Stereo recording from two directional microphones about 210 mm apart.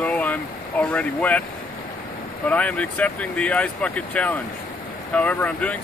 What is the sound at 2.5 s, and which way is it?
Speech, 5° left (ahead or behind).